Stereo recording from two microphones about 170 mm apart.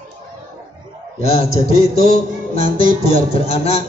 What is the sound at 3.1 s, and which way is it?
Speech, 35° left (ahead or behind).